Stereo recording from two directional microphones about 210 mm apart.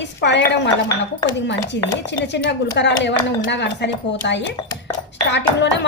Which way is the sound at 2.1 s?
55° left (ahead or behind).